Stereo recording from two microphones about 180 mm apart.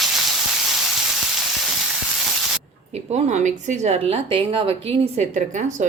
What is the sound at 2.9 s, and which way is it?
Speech, 40° right (ahead or behind).